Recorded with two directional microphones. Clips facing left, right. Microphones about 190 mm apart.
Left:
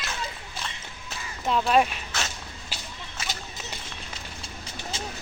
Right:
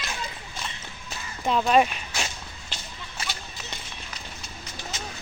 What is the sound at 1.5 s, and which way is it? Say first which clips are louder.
Speech: right 1 dB; centre (ahead or behind).